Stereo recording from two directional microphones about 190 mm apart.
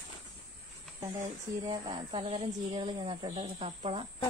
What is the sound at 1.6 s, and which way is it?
Speech, 30° right (ahead or behind).